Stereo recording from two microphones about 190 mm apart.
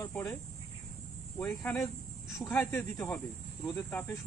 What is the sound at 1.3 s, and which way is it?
Speech, 5° left (ahead or behind).